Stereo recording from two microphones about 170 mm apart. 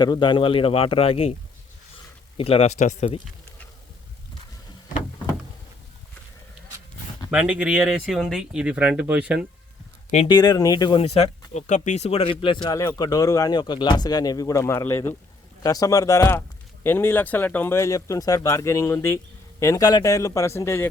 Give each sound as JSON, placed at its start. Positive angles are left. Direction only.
{"t": 0.0, "sound": "speech", "side_deg": 25}
{"t": 2.4, "sound": "speech", "side_deg": 35}
{"t": 7.3, "sound": "speech", "side_deg": -5}
{"t": 10.2, "sound": "speech", "side_deg": 25}
{"t": 12.6, "sound": "speech", "side_deg": 20}